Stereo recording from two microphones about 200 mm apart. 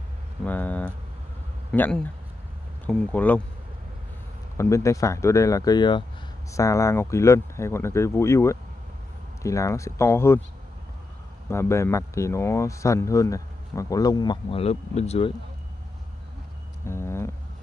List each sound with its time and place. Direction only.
0.4 s speech: 10° left (ahead or behind)
4.6 s speech: 15° left (ahead or behind)
11.4 s speech: 15° left (ahead or behind); by 15.3 s 30° left (ahead or behind)
16.8 s a sound: 15° left (ahead or behind)